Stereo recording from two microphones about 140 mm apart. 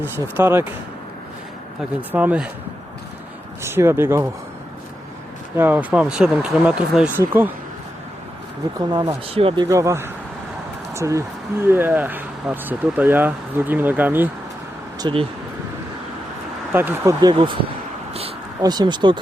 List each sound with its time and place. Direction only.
0.0 s speech: 15° right (ahead or behind)
2.0 s speech: 10° right (ahead or behind)
3.6 s speech: 20° right (ahead or behind)
5.5 s speech: 15° right (ahead or behind)
8.9 s speech: 30° right (ahead or behind)
9.3 s speech: 40° right (ahead or behind)
9.6 s speech: 20° right (ahead or behind)
15.0 s speech: 30° right (ahead or behind)
16.7 s speech: 15° right (ahead or behind)
17.3 s speech: 35° right (ahead or behind)
18.6 s speech: 30° right (ahead or behind)